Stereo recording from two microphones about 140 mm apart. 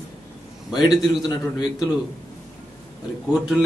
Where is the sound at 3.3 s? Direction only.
5° right (ahead or behind).